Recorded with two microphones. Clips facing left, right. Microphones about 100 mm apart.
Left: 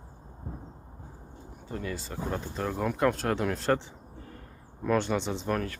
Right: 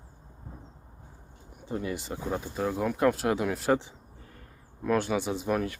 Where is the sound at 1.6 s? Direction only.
20° right (ahead or behind).